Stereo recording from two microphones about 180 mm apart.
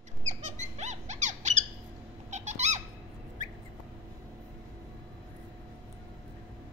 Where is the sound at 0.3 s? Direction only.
40° right (ahead or behind).